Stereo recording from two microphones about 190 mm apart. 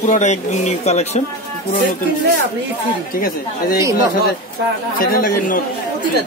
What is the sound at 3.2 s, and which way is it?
Speech, 50° left (ahead or behind).